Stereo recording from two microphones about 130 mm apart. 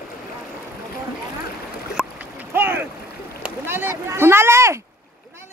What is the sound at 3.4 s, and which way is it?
Speech, 15° right (ahead or behind).